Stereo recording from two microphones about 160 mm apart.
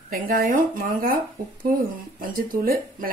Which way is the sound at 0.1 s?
65° right (ahead or behind).